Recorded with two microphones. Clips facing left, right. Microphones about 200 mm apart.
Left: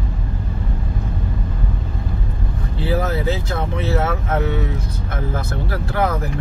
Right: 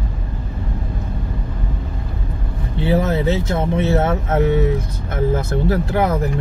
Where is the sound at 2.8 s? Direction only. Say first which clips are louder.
Right 3 dB; 25° right (ahead or behind).